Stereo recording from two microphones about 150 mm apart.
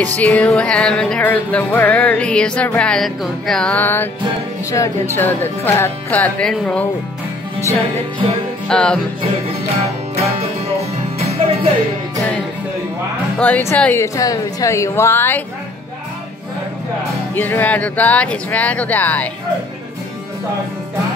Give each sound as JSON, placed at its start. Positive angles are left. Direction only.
{"t": 0.0, "sound": "speech", "side_deg": 10}
{"t": 8.6, "sound": "music", "side_deg": 5}
{"t": 10.8, "sound": "music", "side_deg": -45}
{"t": 13.4, "sound": "a woman's voice", "side_deg": 10}
{"t": 17.3, "sound": "speech", "side_deg": 15}